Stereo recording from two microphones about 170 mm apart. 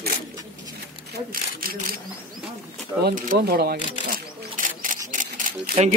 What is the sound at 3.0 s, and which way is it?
Single-lens reflex camera, 60° right (ahead or behind).